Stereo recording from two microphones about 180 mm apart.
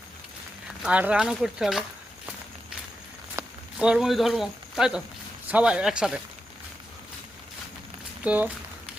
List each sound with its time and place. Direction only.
0.8 s speech: 5° right (ahead or behind)
3.3 s speech: 5° right (ahead or behind)
8.2 s speech: 10° right (ahead or behind)